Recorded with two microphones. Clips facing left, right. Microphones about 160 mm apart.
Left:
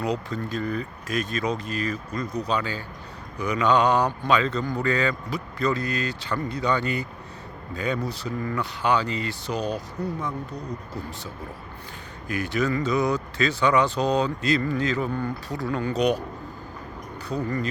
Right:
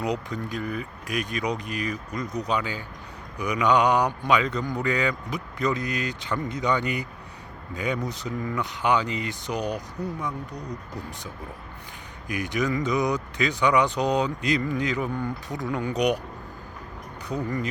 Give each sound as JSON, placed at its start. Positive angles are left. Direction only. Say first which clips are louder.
{"t": 0.0, "sound": "speech", "louder": "left 1 dB", "side_deg": -15}
{"t": 12.3, "sound": "speech", "louder": "left 1 dB", "side_deg": -15}
{"t": 17.2, "sound": "speech", "louder": "left 1 dB", "side_deg": -15}